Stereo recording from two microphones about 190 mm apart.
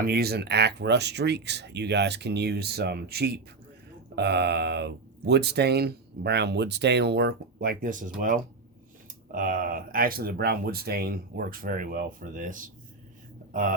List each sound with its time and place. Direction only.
0.1 s speech: 55° right (ahead or behind)
9.3 s speech: 45° right (ahead or behind)